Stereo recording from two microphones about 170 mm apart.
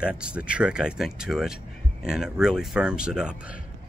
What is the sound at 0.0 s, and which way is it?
Speech, 5° right (ahead or behind).